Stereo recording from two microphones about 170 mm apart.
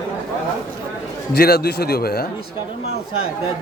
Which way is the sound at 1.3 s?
70° left (ahead or behind).